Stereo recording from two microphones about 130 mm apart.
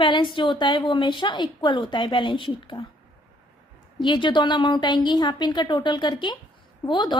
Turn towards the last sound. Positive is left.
turn(degrees=35)  # may be behind; listen again after turning